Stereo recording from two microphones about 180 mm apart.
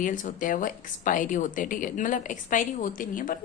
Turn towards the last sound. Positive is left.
turn(degrees=50)  # may be behind; listen again after turning